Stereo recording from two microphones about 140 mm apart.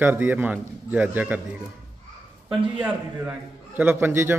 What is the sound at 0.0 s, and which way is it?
A man's voice, 15° right (ahead or behind).